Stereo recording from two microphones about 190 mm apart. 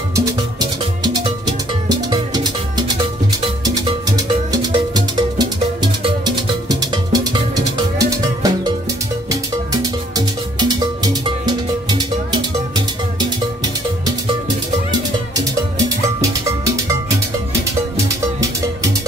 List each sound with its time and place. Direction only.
0.1 s music: 20° right (ahead or behind)
3.4 s music: 20° right (ahead or behind)
14.9 s music: 20° right (ahead or behind)